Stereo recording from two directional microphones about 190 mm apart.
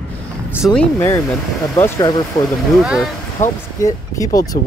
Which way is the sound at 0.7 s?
15° left (ahead or behind).